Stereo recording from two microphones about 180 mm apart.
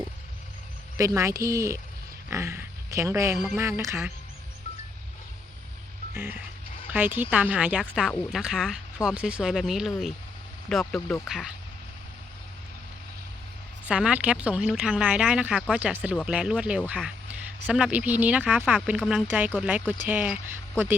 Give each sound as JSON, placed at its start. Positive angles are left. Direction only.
{"t": 0.9, "sound": "speech", "side_deg": -15}
{"t": 3.3, "sound": "speech", "side_deg": 0}
{"t": 3.6, "sound": "speech", "side_deg": -15}
{"t": 6.1, "sound": "speech", "side_deg": -10}
{"t": 13.8, "sound": "speech", "side_deg": -5}